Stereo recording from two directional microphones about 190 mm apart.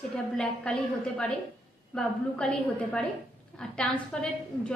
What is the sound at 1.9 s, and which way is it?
A woman's voice, 5° left (ahead or behind).